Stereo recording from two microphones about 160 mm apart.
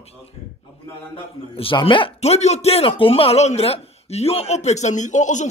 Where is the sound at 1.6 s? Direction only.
30° left (ahead or behind).